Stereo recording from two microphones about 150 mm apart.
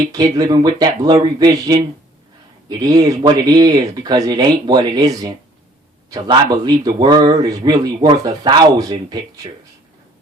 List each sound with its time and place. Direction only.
0.1 s speech: 25° right (ahead or behind)